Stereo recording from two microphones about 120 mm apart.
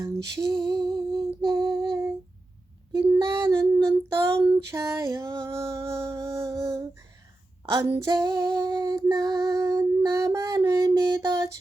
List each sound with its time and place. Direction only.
0.0 s child singing: 25° right (ahead or behind)
0.9 s humming: 35° right (ahead or behind)
2.9 s child singing: 25° right (ahead or behind)
5.5 s a sound: 25° right (ahead or behind)
7.8 s female singing: 30° right (ahead or behind)
8.9 s child singing: 30° right (ahead or behind)